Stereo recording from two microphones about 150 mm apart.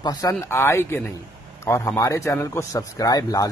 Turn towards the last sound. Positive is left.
turn(degrees=25)  # may be behind; listen again after turning